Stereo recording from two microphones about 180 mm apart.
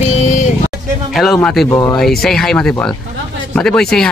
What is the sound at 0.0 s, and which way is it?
Vehicle, 40° left (ahead or behind).